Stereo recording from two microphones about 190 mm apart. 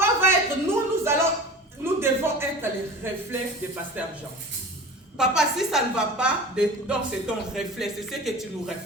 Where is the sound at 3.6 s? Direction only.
10° right (ahead or behind).